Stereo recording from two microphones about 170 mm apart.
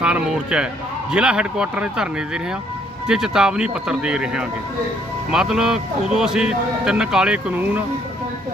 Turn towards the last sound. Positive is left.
turn(degrees=-10)  # may be behind; listen again after turning